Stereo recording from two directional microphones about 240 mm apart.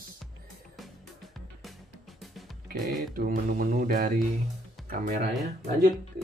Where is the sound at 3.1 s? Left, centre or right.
Right.